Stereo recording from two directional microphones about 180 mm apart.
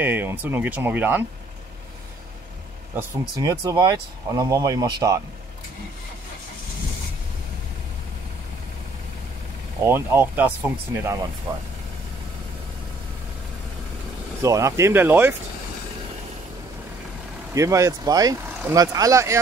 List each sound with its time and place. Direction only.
0.0 s speech: 10° right (ahead or behind)
2.9 s speech: 15° right (ahead or behind)
9.8 s speech: 10° right (ahead or behind)
11.5 s speech: 25° right (ahead or behind)
14.4 s speech: 15° right (ahead or behind)
17.6 s speech: 15° right (ahead or behind)